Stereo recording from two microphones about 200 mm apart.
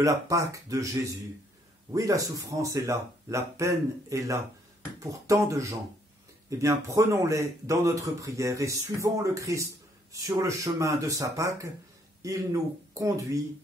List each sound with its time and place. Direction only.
0.0 s speech: 15° right (ahead or behind)
1.9 s speech: 15° right (ahead or behind)